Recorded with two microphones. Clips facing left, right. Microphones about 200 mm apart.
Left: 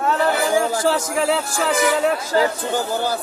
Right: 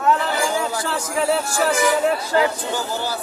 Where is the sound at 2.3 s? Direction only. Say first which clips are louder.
Left 1 dB; 45° left (ahead or behind).